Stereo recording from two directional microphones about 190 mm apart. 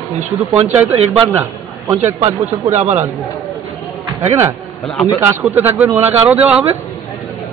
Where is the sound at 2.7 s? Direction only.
35° right (ahead or behind).